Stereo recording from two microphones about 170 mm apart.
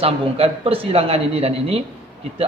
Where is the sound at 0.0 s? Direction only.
35° right (ahead or behind).